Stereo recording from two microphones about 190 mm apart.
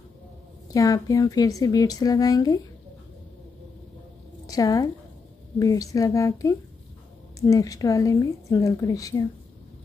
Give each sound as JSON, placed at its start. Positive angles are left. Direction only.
{"t": 0.7, "sound": "speech", "side_deg": 20}
{"t": 4.5, "sound": "a woman's voice", "side_deg": 20}